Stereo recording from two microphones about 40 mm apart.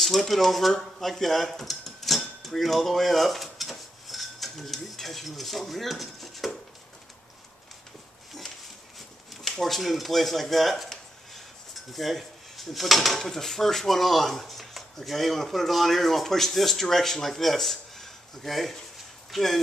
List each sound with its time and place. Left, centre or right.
0.0 s dishes: centre
9.3 s speech: centre